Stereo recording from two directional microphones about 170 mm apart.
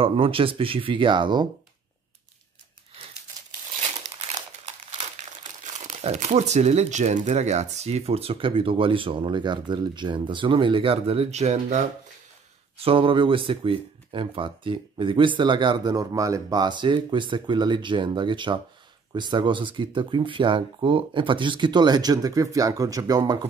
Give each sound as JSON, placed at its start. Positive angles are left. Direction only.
{"t": 0.0, "sound": "speech", "side_deg": -30}
{"t": 5.6, "sound": "speech", "side_deg": -45}